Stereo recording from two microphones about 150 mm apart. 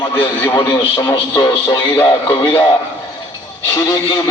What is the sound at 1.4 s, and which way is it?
A man's voice, 20° left (ahead or behind).